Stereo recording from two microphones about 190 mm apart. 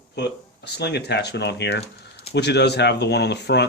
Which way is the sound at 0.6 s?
60° left (ahead or behind).